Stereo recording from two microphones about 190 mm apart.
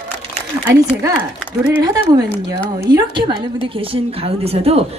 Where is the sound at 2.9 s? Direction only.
25° right (ahead or behind).